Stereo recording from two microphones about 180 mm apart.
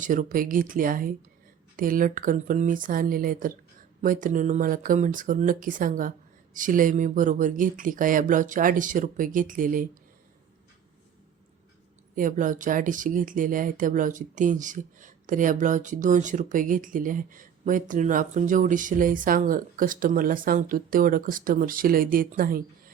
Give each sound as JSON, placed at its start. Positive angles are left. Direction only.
{"t": 0.0, "sound": "speech", "side_deg": -45}
{"t": 12.1, "sound": "speech", "side_deg": -45}